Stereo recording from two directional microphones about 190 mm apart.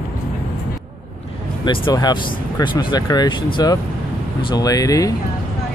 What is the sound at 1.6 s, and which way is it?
Speech, 25° left (ahead or behind).